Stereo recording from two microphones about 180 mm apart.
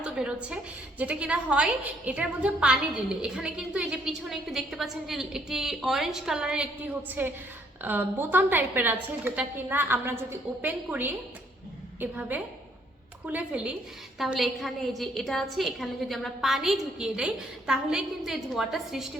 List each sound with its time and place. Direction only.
0.0 s a woman's voice: 5° right (ahead or behind)